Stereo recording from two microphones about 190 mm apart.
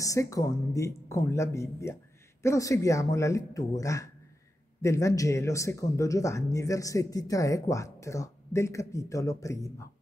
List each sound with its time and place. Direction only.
0.0 s speech: 15° left (ahead or behind)